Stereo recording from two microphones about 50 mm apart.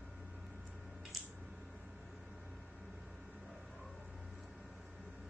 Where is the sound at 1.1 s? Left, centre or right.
Centre.